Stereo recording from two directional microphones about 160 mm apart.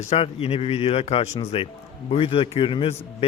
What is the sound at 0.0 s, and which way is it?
A man's voice, 40° left (ahead or behind).